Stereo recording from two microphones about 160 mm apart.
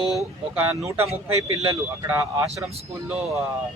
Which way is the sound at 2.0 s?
20° right (ahead or behind).